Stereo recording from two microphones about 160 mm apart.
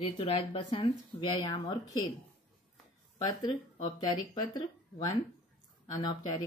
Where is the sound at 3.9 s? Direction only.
25° left (ahead or behind).